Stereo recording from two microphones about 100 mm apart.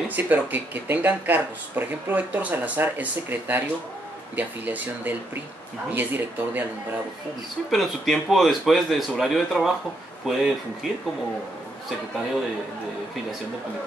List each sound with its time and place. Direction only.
0.1 s speech: 15° right (ahead or behind)
7.7 s speech: centre (ahead or behind)